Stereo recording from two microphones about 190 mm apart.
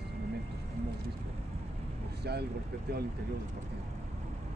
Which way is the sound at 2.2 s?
60° right (ahead or behind).